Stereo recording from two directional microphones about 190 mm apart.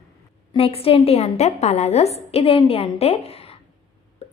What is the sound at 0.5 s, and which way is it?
A woman's voice, 30° left (ahead or behind).